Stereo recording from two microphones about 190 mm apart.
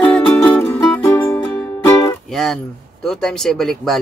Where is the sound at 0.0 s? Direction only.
10° left (ahead or behind).